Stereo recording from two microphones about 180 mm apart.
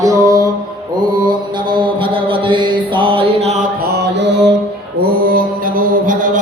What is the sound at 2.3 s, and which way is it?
Mantra, 25° right (ahead or behind).